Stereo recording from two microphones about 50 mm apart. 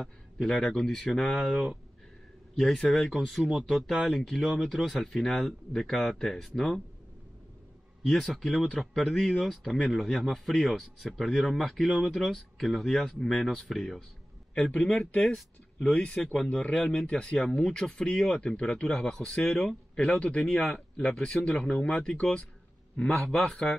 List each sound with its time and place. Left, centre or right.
0.0 s speech: centre
4.1 s speech: centre
8.0 s speech: centre
14.7 s speech: left
15.0 s speech: centre
16.4 s speech: left
20.0 s speech: left